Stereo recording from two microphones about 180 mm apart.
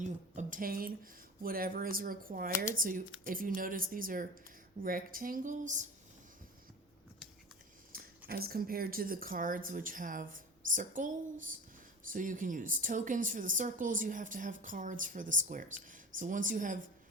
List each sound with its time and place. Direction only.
0.0 s speech: 45° right (ahead or behind)
7.9 s a sound: 50° right (ahead or behind)
8.3 s speech: 55° right (ahead or behind)